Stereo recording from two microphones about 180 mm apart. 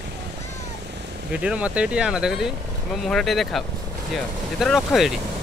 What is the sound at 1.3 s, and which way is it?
Speech, 5° right (ahead or behind).